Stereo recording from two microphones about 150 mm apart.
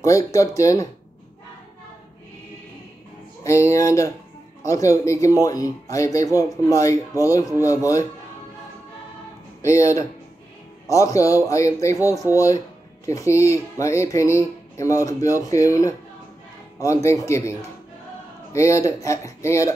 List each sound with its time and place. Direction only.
0.0 s music: 20° left (ahead or behind)
3.4 s music: 20° left (ahead or behind)
9.6 s music: 20° left (ahead or behind)